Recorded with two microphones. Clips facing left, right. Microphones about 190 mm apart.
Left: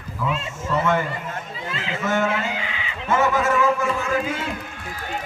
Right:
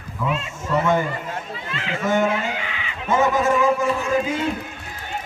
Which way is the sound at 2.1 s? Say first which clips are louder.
Right 2 dB; 15° right (ahead or behind).